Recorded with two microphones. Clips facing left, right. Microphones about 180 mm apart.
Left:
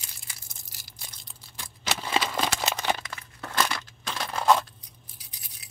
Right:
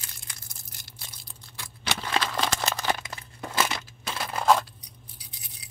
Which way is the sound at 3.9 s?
5° right (ahead or behind).